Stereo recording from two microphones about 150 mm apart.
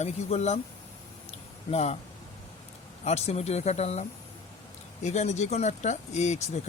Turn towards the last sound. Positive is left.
turn(degrees=50)  # may be behind; listen again after turning